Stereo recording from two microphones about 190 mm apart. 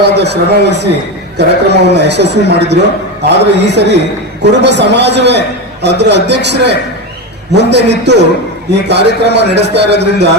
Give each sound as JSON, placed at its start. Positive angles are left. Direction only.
{"t": 0.0, "sound": "speech", "side_deg": -60}